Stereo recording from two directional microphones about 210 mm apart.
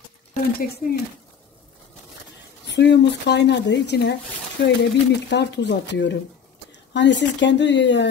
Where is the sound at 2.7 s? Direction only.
55° left (ahead or behind).